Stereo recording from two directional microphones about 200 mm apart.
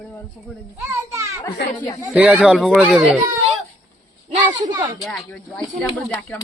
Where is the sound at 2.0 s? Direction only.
5° right (ahead or behind).